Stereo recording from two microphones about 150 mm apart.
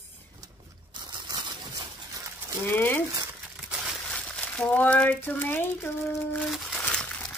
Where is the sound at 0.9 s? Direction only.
30° right (ahead or behind).